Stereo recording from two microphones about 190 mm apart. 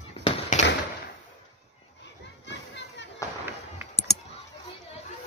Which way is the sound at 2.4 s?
65° left (ahead or behind).